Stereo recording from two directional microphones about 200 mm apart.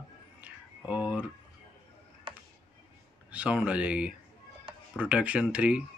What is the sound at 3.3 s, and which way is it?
Speech, 5° right (ahead or behind).